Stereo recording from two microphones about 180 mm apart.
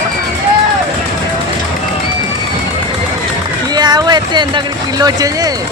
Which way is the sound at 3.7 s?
25° right (ahead or behind).